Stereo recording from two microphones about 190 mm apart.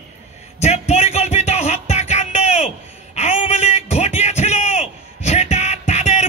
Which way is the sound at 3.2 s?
35° left (ahead or behind).